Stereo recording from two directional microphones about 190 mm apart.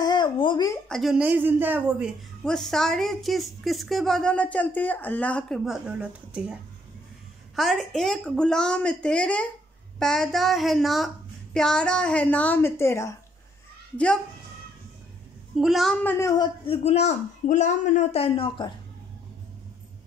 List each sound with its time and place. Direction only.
0.0 s a sound: 25° left (ahead or behind)
0.8 s a woman's voice: centre (ahead or behind)
7.5 s a woman's voice: centre (ahead or behind)
15.5 s a woman's voice: centre (ahead or behind); by 16.4 s 15° left (ahead or behind)
16.6 s a man's voice: 30° left (ahead or behind)